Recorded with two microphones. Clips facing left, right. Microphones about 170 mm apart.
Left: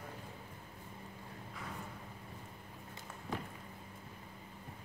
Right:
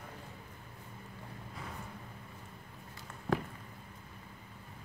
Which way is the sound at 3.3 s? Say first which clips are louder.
Right 8 dB; 75° right (ahead or behind).